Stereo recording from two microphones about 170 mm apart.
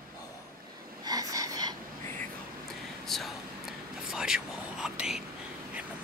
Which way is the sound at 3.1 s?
Centre (ahead or behind).